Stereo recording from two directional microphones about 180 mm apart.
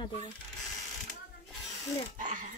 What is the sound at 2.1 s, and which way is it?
Speech, 45° right (ahead or behind).